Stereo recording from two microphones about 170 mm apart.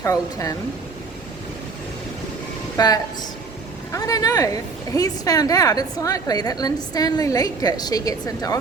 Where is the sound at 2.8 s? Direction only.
20° left (ahead or behind).